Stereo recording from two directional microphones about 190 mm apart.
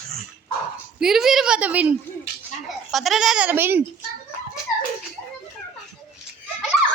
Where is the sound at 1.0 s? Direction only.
Centre (ahead or behind).